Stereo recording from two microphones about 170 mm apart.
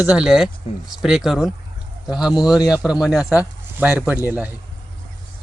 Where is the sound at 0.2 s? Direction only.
5° right (ahead or behind).